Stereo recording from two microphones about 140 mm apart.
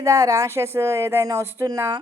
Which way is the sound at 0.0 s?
25° right (ahead or behind).